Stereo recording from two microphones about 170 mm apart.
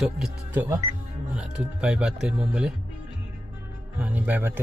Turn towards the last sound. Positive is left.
turn(degrees=-10)  # may be behind; listen again after turning